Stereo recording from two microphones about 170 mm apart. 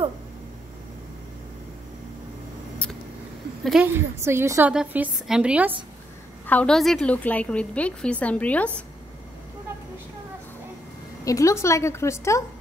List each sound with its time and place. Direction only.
3.8 s a woman's voice: 15° right (ahead or behind)
6.4 s a woman's voice: 10° left (ahead or behind)
11.2 s a woman's voice: 20° left (ahead or behind)